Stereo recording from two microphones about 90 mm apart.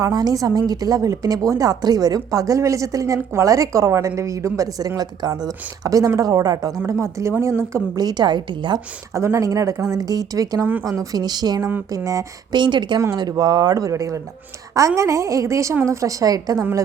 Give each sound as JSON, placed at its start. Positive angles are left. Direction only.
{"t": 0.0, "sound": "speech", "side_deg": -45}
{"t": 7.9, "sound": "speech", "side_deg": -50}
{"t": 9.1, "sound": "speech", "side_deg": -35}
{"t": 10.6, "sound": "speech", "side_deg": -20}
{"t": 10.8, "sound": "speech", "side_deg": -45}
{"t": 12.5, "sound": "speech", "side_deg": -60}
{"t": 13.1, "sound": "speech", "side_deg": -50}